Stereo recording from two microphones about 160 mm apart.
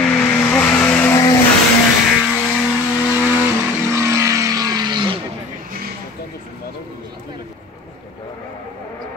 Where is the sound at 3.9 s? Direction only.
20° right (ahead or behind).